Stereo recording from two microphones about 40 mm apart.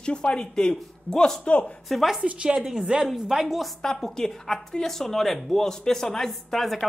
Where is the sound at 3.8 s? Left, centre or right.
Centre.